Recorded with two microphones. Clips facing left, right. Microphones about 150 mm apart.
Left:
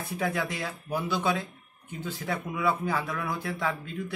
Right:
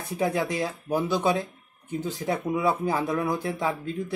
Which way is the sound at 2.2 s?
20° right (ahead or behind).